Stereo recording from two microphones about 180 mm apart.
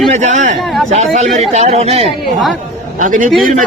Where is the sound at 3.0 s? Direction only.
45° right (ahead or behind).